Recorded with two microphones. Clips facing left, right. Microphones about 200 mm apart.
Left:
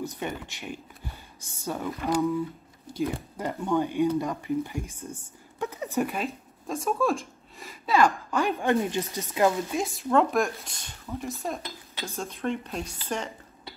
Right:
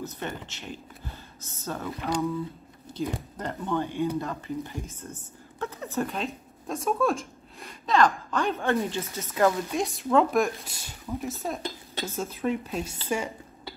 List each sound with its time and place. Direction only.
0.0 s a woman's voice: 10° left (ahead or behind)
3.3 s a woman's voice: 10° left (ahead or behind)
9.7 s speech: centre (ahead or behind)
11.6 s speech: 40° right (ahead or behind)
12.2 s speech: 5° right (ahead or behind)